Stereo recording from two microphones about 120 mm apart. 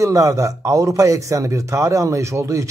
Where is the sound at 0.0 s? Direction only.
30° right (ahead or behind).